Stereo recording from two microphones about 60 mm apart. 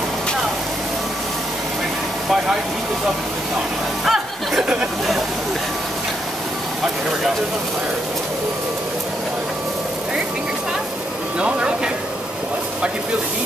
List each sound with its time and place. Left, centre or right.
4.0 s speech: centre
11.3 s speech: centre